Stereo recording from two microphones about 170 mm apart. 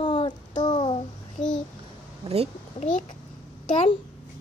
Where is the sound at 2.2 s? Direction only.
35° right (ahead or behind).